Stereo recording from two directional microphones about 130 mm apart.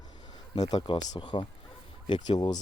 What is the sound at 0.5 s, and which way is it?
Speech, 35° left (ahead or behind).